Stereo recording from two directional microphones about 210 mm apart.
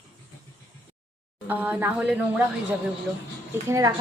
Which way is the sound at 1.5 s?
10° right (ahead or behind).